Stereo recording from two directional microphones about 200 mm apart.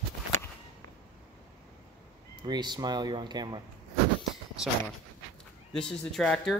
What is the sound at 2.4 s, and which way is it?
Speech, 20° right (ahead or behind).